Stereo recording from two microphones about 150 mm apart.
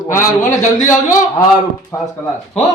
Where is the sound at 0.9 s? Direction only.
20° left (ahead or behind).